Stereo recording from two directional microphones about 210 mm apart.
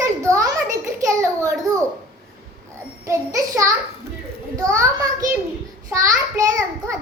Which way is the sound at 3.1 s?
15° right (ahead or behind).